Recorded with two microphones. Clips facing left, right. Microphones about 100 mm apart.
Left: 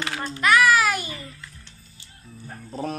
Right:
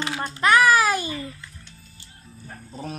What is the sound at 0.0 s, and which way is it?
Babbling, 10° right (ahead or behind).